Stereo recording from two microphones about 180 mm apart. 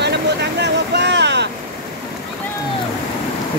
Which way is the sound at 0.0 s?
70° right (ahead or behind).